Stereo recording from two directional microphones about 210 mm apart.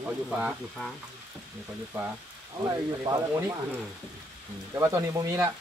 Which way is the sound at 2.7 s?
15° right (ahead or behind).